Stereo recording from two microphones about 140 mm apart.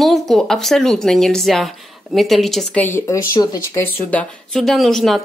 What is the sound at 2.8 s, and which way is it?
Speech, 20° left (ahead or behind).